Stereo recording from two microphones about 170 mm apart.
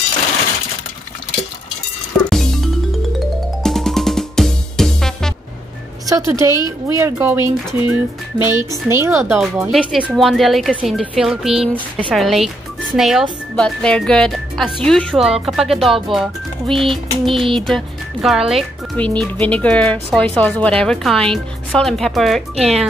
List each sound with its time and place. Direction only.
2.2 s music: centre (ahead or behind)
6.0 s a woman's voice: 20° right (ahead or behind)
9.7 s speech: centre (ahead or behind)